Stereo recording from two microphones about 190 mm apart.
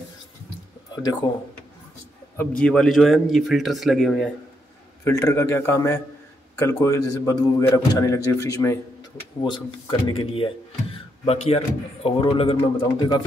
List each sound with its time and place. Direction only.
1.2 s a man's voice: 20° left (ahead or behind)
2.3 s a man's voice: 5° left (ahead or behind)
5.0 s a man's voice: 15° left (ahead or behind); by 12.8 s 30° left (ahead or behind)